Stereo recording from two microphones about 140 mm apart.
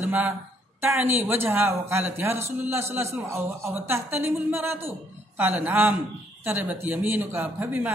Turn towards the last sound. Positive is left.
turn(degrees=-15)  # may be behind; listen again after turning